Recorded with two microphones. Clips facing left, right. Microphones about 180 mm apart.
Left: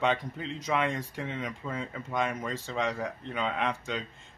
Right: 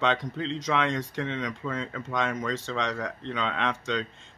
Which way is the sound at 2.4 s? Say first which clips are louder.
Right 2 dB; 10° left (ahead or behind).